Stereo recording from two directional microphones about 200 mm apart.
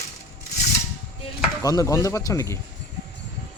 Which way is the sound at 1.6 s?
15° left (ahead or behind).